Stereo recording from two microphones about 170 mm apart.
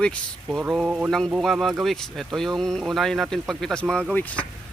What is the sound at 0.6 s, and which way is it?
Speech, 5° right (ahead or behind).